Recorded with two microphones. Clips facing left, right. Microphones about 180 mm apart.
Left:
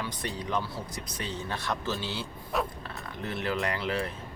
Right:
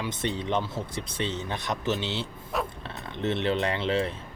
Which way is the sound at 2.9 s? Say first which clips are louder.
Right 7 dB; 25° right (ahead or behind).